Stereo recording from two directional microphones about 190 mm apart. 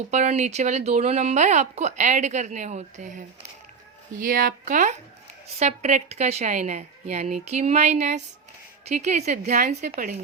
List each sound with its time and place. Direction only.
0.1 s speech: 35° right (ahead or behind)